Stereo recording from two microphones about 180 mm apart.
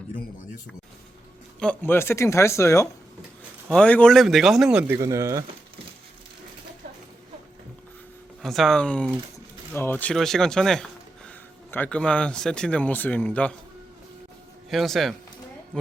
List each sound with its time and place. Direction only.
1.5 s speech: 10° left (ahead or behind); by 4.9 s 5° right (ahead or behind)
4.9 s speech: 15° right (ahead or behind)
8.4 s speech: centre (ahead or behind)
14.7 s speech: centre (ahead or behind)